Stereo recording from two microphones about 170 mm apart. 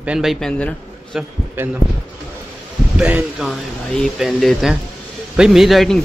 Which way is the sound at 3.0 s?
5° right (ahead or behind).